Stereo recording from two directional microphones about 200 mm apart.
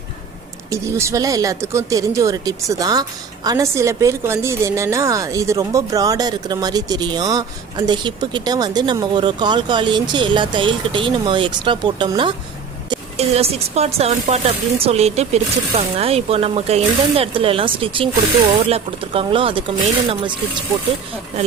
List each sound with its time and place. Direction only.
0.7 s speech: 15° right (ahead or behind)